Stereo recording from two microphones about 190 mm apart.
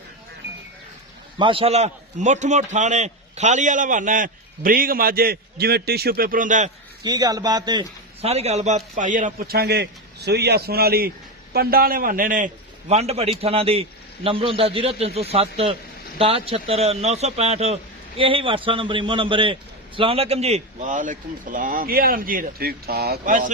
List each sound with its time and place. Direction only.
1.4 s a man's voice: 25° right (ahead or behind); by 6.7 s 45° right (ahead or behind)
7.0 s a man's voice: 20° right (ahead or behind); by 12.5 s 45° right (ahead or behind)
12.9 s a man's voice: 35° right (ahead or behind)